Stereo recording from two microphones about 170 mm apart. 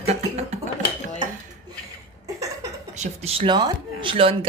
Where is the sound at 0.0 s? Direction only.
40° right (ahead or behind).